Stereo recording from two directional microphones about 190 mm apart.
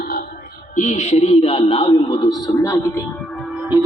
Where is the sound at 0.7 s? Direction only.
40° left (ahead or behind); by 2.8 s 15° left (ahead or behind).